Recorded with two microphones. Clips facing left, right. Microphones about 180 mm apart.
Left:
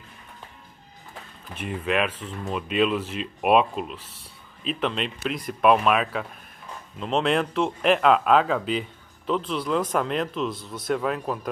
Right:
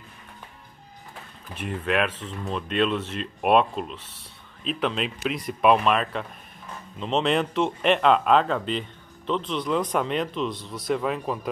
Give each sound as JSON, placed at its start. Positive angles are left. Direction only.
{"t": 1.5, "sound": "speech", "side_deg": 0}